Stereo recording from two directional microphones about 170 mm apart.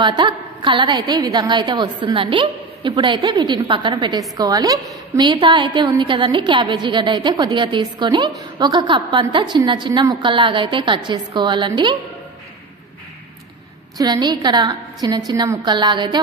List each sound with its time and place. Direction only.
0.0 s a woman's voice: 25° right (ahead or behind)
13.9 s a woman's voice: 25° right (ahead or behind)